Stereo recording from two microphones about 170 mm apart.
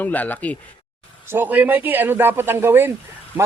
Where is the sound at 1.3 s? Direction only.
10° right (ahead or behind).